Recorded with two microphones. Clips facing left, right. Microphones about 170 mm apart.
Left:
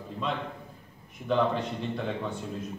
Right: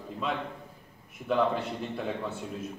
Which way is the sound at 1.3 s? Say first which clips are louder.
Left 1 dB; 5° right (ahead or behind).